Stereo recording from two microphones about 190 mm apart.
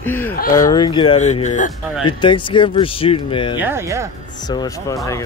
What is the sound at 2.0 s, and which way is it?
Speech, 25° left (ahead or behind).